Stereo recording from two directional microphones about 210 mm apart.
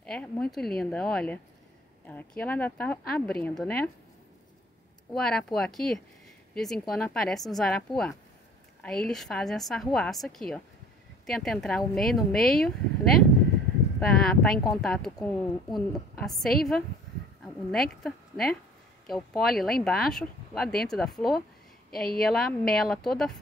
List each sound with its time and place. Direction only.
0.0 s speech: 5° left (ahead or behind)
5.1 s a woman's voice: centre (ahead or behind)